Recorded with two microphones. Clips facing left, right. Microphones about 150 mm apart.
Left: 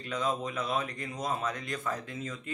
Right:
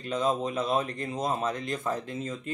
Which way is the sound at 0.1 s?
25° right (ahead or behind).